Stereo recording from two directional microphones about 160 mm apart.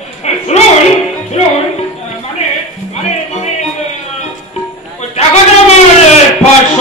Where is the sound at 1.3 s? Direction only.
40° left (ahead or behind).